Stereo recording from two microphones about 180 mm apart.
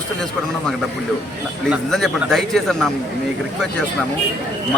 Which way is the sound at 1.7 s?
Centre (ahead or behind).